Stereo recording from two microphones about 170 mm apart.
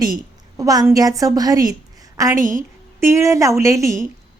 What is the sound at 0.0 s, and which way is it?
A woman's voice, 20° right (ahead or behind).